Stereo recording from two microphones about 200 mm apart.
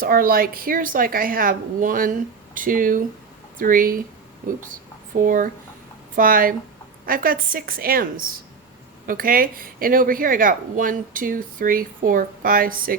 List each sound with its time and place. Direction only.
0.0 s speech: 45° right (ahead or behind)